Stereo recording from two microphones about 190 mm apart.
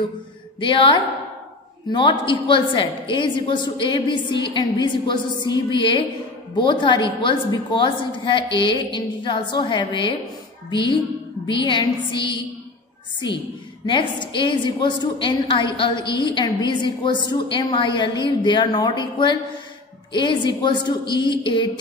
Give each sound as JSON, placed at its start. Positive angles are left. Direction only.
{"t": 0.6, "sound": "a woman's voice", "side_deg": 25}
{"t": 13.8, "sound": "a woman's voice", "side_deg": 25}